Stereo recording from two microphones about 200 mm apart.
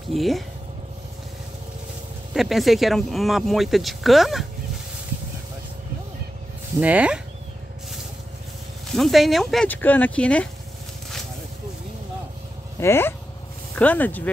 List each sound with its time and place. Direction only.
0.1 s speech: centre (ahead or behind)
2.3 s speech: centre (ahead or behind)
6.8 s speech: 5° right (ahead or behind)
8.9 s speech: centre (ahead or behind)
12.8 s speech: 10° left (ahead or behind)